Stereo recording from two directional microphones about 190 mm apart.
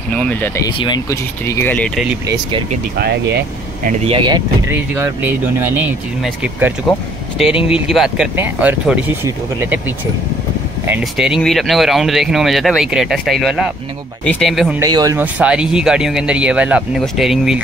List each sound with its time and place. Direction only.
0.1 s speech: 5° left (ahead or behind)
0.7 s speech: 20° left (ahead or behind)
2.2 s speech: 20° right (ahead or behind)
4.0 s speech: 25° right (ahead or behind)
4.6 s speech: 15° right (ahead or behind)
14.8 s speech: 20° right (ahead or behind); by 17.6 s centre (ahead or behind)